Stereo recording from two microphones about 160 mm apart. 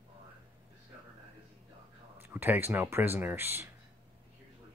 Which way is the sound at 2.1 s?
15° right (ahead or behind).